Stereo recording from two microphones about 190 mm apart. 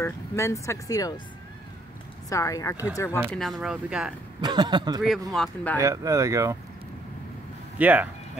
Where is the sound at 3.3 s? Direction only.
Centre (ahead or behind).